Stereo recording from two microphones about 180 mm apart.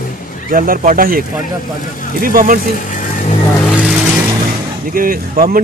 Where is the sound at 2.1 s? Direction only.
50° right (ahead or behind).